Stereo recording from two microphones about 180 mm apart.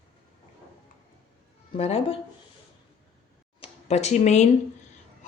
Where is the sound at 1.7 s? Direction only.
35° left (ahead or behind).